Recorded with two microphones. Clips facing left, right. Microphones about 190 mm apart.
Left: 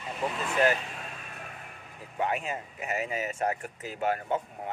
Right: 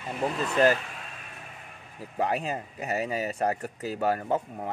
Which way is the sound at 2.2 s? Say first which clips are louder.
Right 2 dB; 35° right (ahead or behind).